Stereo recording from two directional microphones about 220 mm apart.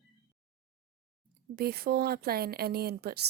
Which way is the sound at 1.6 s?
45° right (ahead or behind).